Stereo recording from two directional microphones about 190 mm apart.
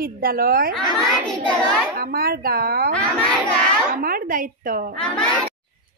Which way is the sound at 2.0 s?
50° right (ahead or behind).